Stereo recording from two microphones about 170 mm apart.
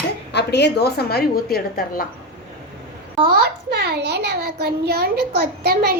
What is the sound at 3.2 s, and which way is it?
A child's voice, 70° right (ahead or behind).